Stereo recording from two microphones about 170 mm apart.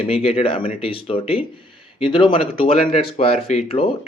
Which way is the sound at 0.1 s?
35° left (ahead or behind).